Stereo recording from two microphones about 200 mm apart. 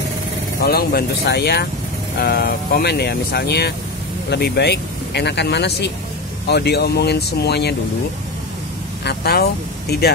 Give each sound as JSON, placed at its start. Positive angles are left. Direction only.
{"t": 0.6, "sound": "speech", "side_deg": 50}
{"t": 9.0, "sound": "speech", "side_deg": 55}